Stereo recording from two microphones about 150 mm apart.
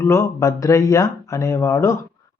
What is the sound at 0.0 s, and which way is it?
A man's voice, 20° left (ahead or behind).